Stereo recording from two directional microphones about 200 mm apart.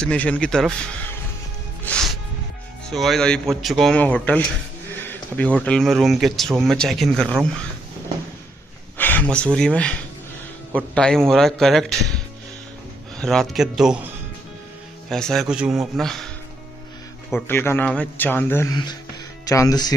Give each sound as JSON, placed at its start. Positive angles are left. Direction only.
{"t": 0.0, "sound": "speech", "side_deg": 5}
{"t": 1.9, "sound": "music", "side_deg": 5}
{"t": 2.9, "sound": "speech", "side_deg": 0}
{"t": 8.9, "sound": "speech", "side_deg": 10}
{"t": 13.2, "sound": "speech", "side_deg": 0}
{"t": 15.0, "sound": "speech", "side_deg": 0}
{"t": 17.3, "sound": "speech", "side_deg": 10}